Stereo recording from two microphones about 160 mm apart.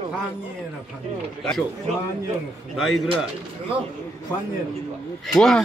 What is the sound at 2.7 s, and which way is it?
Speech, centre (ahead or behind).